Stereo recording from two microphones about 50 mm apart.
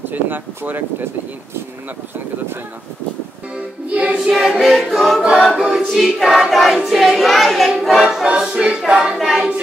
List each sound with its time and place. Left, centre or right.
0.0 s speech: right
3.9 s speech: right
4.2 s child singing: centre
5.7 s choir: centre
6.2 s child singing: centre
8.6 s choir: centre